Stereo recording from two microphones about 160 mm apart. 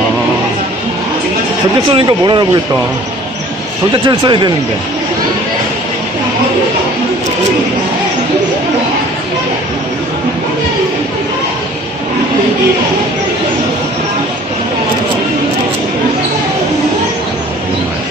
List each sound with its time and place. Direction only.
1.9 s speech: 30° right (ahead or behind)
3.9 s speech: 30° right (ahead or behind)